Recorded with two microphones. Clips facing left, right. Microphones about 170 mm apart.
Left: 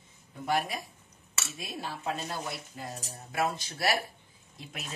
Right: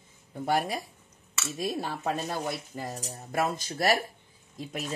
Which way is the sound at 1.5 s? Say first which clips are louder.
Right 8 dB; 45° right (ahead or behind).